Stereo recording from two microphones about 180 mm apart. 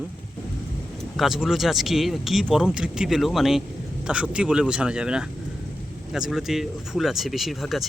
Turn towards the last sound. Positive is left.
turn(degrees=0)  # may be behind; listen again after turning